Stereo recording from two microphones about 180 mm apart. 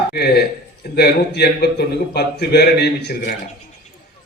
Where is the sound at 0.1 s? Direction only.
60° left (ahead or behind).